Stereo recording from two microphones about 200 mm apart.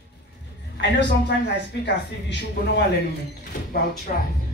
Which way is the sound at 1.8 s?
60° left (ahead or behind).